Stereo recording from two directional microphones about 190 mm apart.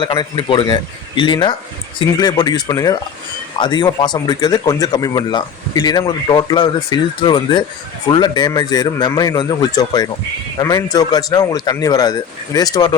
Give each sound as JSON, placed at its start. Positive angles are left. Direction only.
{"t": 0.0, "sound": "speech", "side_deg": 25}